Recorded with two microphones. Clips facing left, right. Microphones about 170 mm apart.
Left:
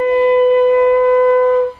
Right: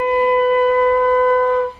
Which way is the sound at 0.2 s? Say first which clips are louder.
Left 5 dB; 25° left (ahead or behind).